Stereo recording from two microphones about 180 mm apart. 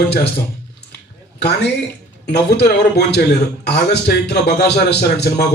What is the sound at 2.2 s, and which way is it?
A man's voice, 65° left (ahead or behind).